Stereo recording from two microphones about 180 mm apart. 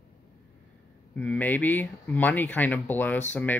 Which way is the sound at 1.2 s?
10° left (ahead or behind).